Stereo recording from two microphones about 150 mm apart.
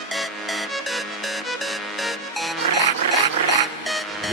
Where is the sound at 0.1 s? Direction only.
Centre (ahead or behind).